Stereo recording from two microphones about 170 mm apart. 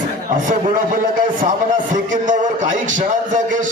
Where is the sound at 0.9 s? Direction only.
50° right (ahead or behind).